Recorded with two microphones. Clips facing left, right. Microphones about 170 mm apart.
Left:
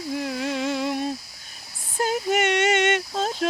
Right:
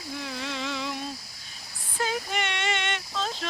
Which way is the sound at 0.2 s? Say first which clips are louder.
Left 6 dB; 50° left (ahead or behind).